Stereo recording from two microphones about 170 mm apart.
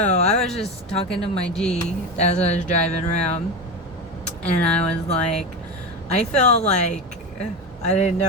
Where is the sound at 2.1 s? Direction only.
40° left (ahead or behind).